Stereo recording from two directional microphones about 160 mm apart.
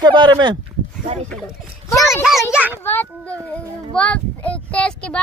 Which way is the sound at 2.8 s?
10° left (ahead or behind).